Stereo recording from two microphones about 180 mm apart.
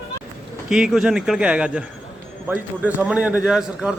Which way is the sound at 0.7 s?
5° right (ahead or behind).